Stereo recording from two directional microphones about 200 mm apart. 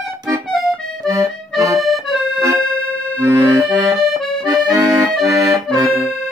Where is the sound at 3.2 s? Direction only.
10° right (ahead or behind).